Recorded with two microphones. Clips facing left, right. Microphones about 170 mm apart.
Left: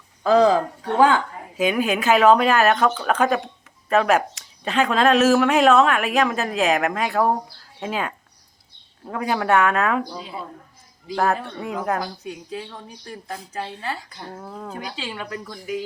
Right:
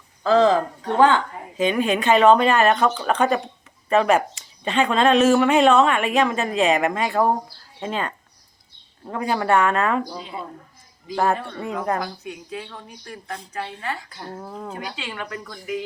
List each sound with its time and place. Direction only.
0.2 s a woman's voice: 15° left (ahead or behind)
11.1 s a woman's voice: centre (ahead or behind)
13.5 s a woman's voice: 25° left (ahead or behind)
14.2 s a woman's voice: 5° right (ahead or behind)